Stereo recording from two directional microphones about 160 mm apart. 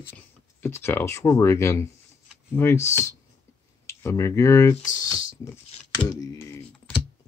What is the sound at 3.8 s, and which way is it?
Speech, 20° left (ahead or behind).